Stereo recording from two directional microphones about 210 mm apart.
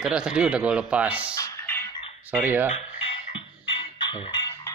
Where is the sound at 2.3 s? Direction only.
10° right (ahead or behind).